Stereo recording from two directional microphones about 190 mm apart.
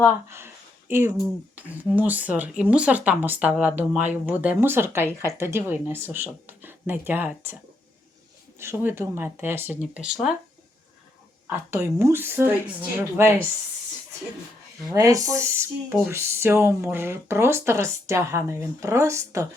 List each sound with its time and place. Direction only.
0.3 s a sound: 15° right (ahead or behind)
1.1 s speech: 10° right (ahead or behind)
8.5 s speech: 15° right (ahead or behind)
11.4 s speech: 10° right (ahead or behind)
14.9 s speech: 20° right (ahead or behind)